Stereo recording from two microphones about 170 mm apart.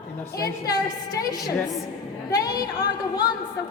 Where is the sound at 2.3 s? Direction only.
20° left (ahead or behind).